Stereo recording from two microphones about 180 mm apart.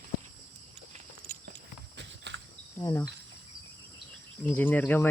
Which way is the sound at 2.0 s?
80° right.